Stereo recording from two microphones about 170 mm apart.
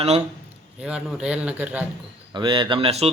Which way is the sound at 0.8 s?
5° right (ahead or behind).